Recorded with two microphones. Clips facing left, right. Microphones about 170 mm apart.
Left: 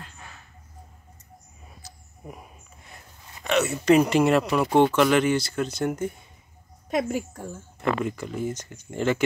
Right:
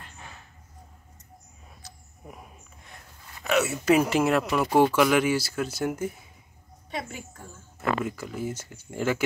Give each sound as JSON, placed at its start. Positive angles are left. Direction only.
{"t": 1.8, "sound": "a sound", "side_deg": 0}
{"t": 3.4, "sound": "speech", "side_deg": -5}
{"t": 7.1, "sound": "speech", "side_deg": 40}
{"t": 7.8, "sound": "speech", "side_deg": -5}